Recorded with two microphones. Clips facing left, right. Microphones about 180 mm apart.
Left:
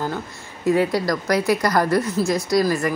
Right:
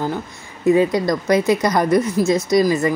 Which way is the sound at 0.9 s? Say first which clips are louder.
Right 3 dB; 20° right (ahead or behind).